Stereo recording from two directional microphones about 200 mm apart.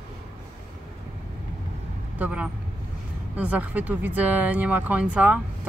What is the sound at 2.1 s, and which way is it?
Speech, 5° right (ahead or behind).